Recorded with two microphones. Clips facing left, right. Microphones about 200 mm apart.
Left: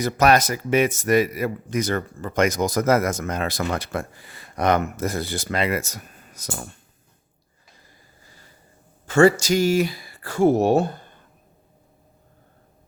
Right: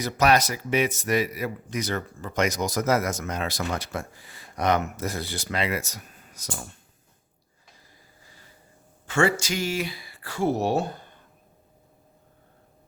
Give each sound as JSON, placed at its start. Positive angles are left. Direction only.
{"t": 0.0, "sound": "speech", "side_deg": 50}
{"t": 9.0, "sound": "speech", "side_deg": 40}